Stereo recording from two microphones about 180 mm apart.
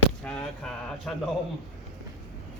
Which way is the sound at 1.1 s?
5° left (ahead or behind).